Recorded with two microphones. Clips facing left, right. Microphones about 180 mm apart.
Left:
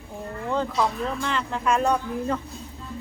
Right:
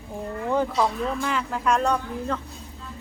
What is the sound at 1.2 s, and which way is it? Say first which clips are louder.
Speech: left 1 dB; 5° right (ahead or behind).